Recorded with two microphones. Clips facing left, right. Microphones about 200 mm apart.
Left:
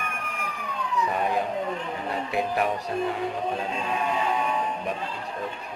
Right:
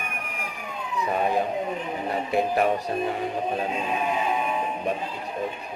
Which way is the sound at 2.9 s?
20° right (ahead or behind).